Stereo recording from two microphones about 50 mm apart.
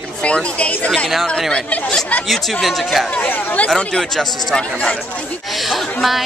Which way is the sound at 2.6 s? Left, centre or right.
Centre.